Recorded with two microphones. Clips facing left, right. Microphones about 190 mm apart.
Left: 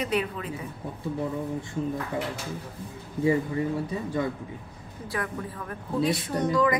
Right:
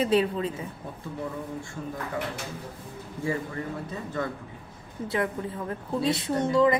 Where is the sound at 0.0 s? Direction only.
30° right (ahead or behind).